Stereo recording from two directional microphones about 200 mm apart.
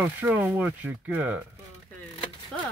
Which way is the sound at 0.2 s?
10° right (ahead or behind).